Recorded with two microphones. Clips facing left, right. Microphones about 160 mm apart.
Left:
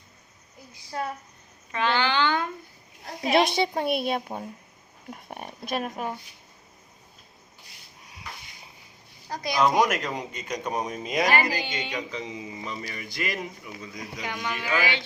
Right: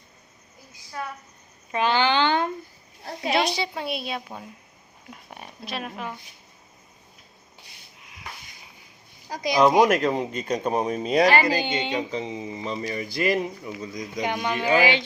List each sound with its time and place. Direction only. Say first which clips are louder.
1.7 s a child's voice: right 3 dB; 15° right (ahead or behind)
3.4 s speech: left 3 dB; 50° left (ahead or behind)
9.3 s speech: right 4 dB; 20° right (ahead or behind)
9.9 s speech: right 8 dB; 30° right (ahead or behind)